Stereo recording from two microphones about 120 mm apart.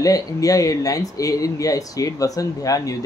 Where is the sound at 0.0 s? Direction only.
30° left (ahead or behind).